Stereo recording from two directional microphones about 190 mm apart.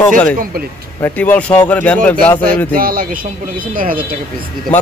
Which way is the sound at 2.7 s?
50° right (ahead or behind).